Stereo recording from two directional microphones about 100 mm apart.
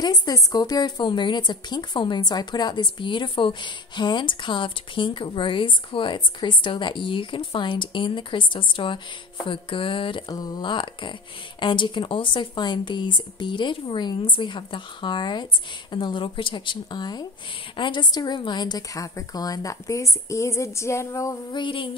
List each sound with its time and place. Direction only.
0.0 s a woman's voice: 40° left (ahead or behind); by 10.3 s 55° left (ahead or behind)
10.3 s a woman's voice: 40° left (ahead or behind)
10.6 s a woman's voice: 55° left (ahead or behind); by 21.4 s 30° left (ahead or behind)
21.5 s a woman's voice: 50° left (ahead or behind)